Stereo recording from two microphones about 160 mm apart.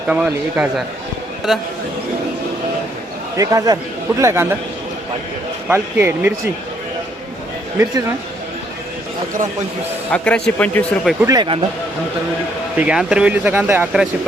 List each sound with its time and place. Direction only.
0.1 s speech: 10° right (ahead or behind)
3.3 s a man's voice: 20° right (ahead or behind)
5.6 s speech: 15° right (ahead or behind)
10.1 s a man's voice: 10° left (ahead or behind)
11.3 s a man's voice: 30° right (ahead or behind)
12.7 s speech: 5° right (ahead or behind)